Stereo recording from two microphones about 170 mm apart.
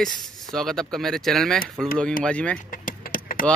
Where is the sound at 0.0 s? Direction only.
Centre (ahead or behind).